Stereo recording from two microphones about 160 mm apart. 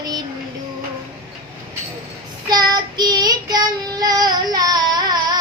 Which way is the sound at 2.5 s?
25° right (ahead or behind).